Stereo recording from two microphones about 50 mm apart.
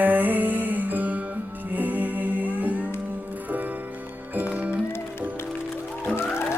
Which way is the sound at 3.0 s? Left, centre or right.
Right.